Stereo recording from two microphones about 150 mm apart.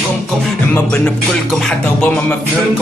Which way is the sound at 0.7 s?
10° left (ahead or behind).